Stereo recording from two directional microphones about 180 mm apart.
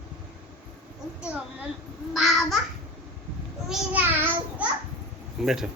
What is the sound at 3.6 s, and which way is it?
Child singing, 10° right (ahead or behind).